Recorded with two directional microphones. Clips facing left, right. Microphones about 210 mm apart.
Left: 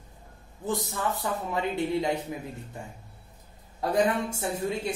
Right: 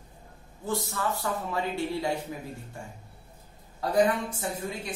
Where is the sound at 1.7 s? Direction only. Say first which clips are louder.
Left 5 dB; 20° left (ahead or behind).